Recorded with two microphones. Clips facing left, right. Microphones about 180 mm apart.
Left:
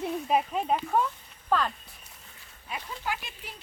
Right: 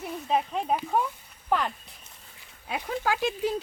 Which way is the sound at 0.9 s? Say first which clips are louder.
Even; 15° right (ahead or behind).